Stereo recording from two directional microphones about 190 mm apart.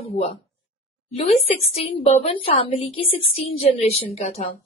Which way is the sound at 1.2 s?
30° left (ahead or behind).